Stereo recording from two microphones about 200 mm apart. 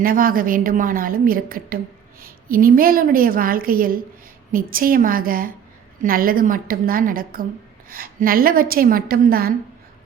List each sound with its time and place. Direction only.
0.0 s a woman's voice: 45° right (ahead or behind)